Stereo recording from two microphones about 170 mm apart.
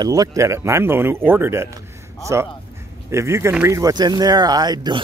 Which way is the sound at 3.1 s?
15° right (ahead or behind).